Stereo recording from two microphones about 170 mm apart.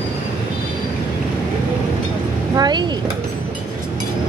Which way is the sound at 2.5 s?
25° right (ahead or behind).